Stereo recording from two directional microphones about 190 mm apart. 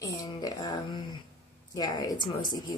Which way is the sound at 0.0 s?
20° left (ahead or behind).